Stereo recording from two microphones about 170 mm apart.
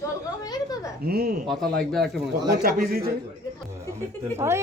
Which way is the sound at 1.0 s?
60° right (ahead or behind).